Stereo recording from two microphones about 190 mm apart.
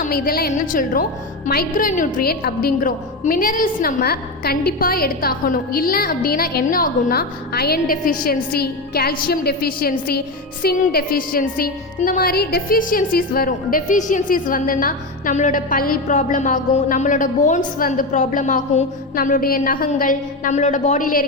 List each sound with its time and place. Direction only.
0.0 s a woman's voice: 50° left (ahead or behind)
19.1 s a woman's voice: 50° left (ahead or behind)